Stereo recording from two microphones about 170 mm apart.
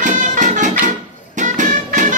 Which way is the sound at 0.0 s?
45° right (ahead or behind).